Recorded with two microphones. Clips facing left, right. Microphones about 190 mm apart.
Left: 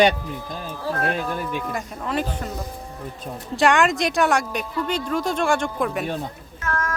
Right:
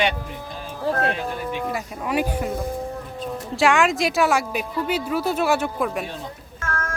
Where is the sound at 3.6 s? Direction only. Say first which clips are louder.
Even; centre (ahead or behind).